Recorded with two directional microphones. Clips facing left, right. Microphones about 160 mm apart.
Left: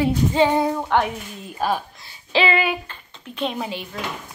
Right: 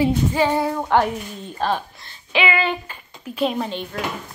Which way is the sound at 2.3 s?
30° left (ahead or behind).